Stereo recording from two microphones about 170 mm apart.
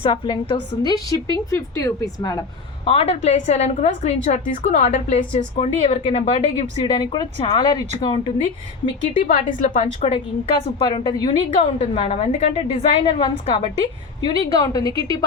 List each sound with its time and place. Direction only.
0.0 s a woman's voice: 30° left (ahead or behind)
2.8 s a woman's voice: 35° left (ahead or behind)
9.1 s a woman's voice: 50° left (ahead or behind)
10.8 s a woman's voice: 25° left (ahead or behind)
14.3 s a woman's voice: 20° left (ahead or behind)